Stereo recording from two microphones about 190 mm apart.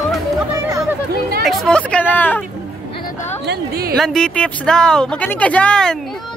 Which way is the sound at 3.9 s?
Centre (ahead or behind).